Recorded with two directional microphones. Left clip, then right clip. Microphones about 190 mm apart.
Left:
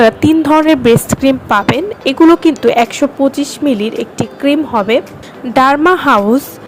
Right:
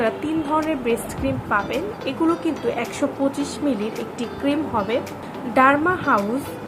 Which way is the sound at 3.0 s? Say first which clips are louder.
Left 10 dB; 35° left (ahead or behind).